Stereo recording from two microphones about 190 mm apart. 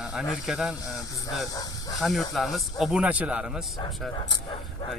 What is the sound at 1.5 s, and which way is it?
Speech, 20° left (ahead or behind).